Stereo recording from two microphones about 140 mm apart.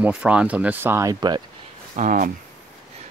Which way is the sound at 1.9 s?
70° right (ahead or behind).